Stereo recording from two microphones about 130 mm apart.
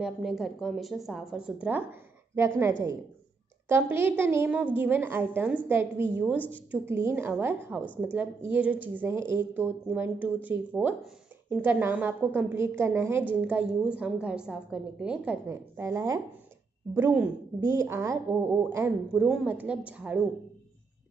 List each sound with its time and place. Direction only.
0.0 s a woman's voice: 5° right (ahead or behind)